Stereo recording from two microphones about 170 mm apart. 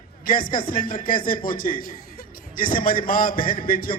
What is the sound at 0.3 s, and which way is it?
A man's voice, 55° left (ahead or behind).